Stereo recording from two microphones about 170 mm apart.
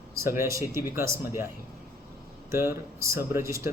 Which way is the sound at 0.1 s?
15° right (ahead or behind).